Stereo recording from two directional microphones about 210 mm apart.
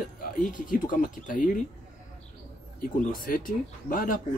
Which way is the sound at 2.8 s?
40° left (ahead or behind).